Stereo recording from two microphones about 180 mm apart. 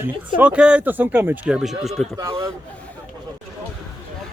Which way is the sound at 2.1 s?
20° right (ahead or behind).